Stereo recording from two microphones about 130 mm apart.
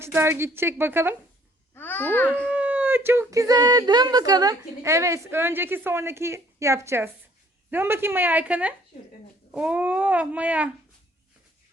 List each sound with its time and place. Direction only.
0.0 s a woman's voice: 20° right (ahead or behind)
1.7 s a child's voice: 15° left (ahead or behind)
2.3 s a woman's voice: 10° right (ahead or behind)